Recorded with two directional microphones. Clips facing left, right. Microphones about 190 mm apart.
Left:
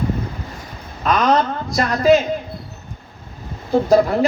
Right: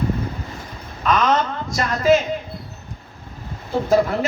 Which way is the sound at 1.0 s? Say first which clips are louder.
Left 2 dB; 35° left (ahead or behind).